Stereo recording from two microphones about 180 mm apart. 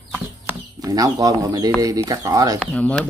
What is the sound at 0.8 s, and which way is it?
Speech, 20° right (ahead or behind).